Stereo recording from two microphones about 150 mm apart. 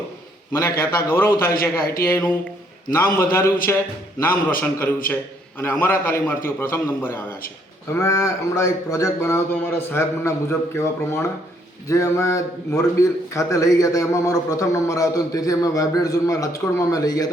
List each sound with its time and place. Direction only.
0.6 s a man's voice: 20° left (ahead or behind)
1.8 s speech: 80° left
2.0 s a man's voice: 20° left (ahead or behind)